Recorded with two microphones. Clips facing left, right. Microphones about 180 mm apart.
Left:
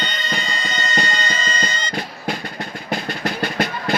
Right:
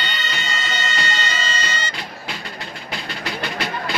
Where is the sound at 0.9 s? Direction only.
40° left (ahead or behind).